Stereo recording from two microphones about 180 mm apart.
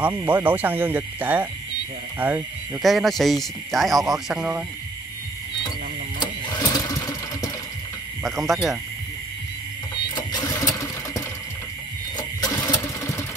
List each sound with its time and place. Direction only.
0.0 s speech: 10° right (ahead or behind)
2.8 s speech: centre (ahead or behind)
6.1 s sewing machine: 25° left (ahead or behind)
8.2 s speech: centre (ahead or behind)
10.1 s sewing machine: 20° left (ahead or behind)